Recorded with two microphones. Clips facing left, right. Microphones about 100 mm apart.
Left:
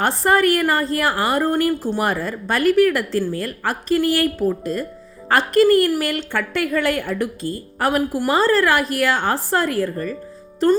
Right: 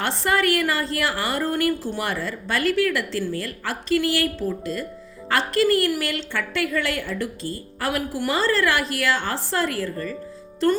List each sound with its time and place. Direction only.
0.0 s a woman's voice: 40° left (ahead or behind)